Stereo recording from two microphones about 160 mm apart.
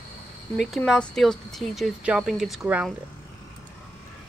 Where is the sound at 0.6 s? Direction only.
Centre (ahead or behind).